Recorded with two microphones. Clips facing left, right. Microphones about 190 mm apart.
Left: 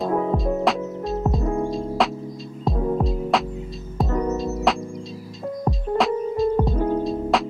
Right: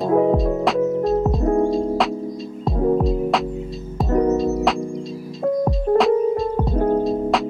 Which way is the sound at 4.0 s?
Centre (ahead or behind).